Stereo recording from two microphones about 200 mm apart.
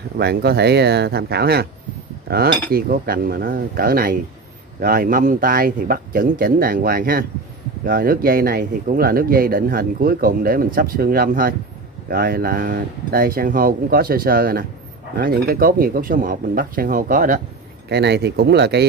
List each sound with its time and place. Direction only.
0.2 s speech: 55° right (ahead or behind)
2.2 s cutlery: 50° right (ahead or behind)
2.7 s speech: 45° right (ahead or behind)
17.8 s speech: 55° right (ahead or behind)